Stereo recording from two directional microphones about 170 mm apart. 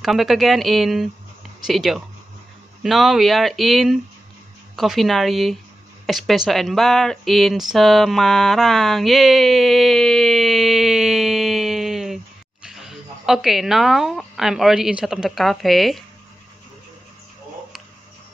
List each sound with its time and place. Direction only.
0.0 s a woman's voice: centre (ahead or behind)